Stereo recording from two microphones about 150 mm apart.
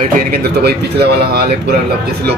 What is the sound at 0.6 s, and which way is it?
Speech, 90° right.